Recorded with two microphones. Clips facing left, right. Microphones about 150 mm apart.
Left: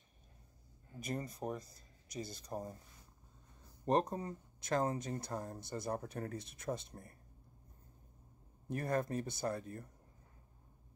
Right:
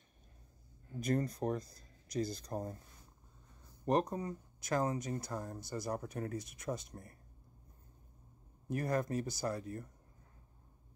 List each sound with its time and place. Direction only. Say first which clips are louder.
0.9 s speech: right 7 dB; 5° left (ahead or behind)
3.8 s speech: right 1 dB; 25° left (ahead or behind)
8.6 s speech: right 1 dB; 25° left (ahead or behind)